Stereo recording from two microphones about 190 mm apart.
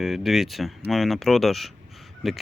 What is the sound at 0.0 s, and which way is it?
Speech, centre (ahead or behind).